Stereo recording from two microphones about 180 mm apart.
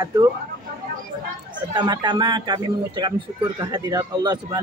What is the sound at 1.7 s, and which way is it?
A man's voice, 25° right (ahead or behind).